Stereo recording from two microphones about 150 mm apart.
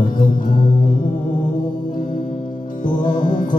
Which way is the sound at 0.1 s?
65° left (ahead or behind).